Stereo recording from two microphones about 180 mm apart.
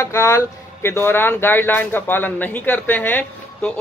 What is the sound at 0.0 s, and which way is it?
Speech, 15° left (ahead or behind).